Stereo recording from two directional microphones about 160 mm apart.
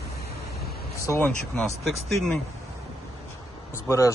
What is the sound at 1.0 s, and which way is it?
Speech, 15° left (ahead or behind).